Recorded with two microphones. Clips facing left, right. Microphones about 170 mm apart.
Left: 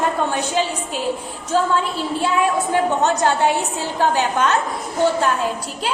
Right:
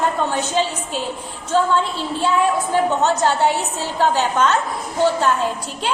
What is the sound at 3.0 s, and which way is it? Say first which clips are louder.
A woman's voice: even; 15° left (ahead or behind).